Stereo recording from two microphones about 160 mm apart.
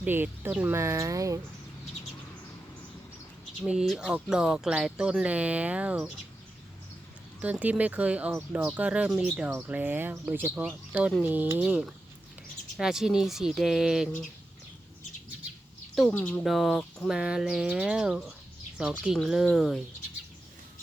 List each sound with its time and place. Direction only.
0.0 s speech: 10° right (ahead or behind)
3.6 s speech: 5° right (ahead or behind)
7.4 s speech: 10° right (ahead or behind)
16.0 s speech: 10° left (ahead or behind)
16.4 s speech: centre (ahead or behind)